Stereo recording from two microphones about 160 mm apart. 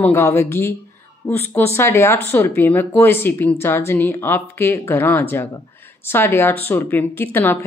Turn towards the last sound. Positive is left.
turn(degrees=15)  # may be behind; listen again after turning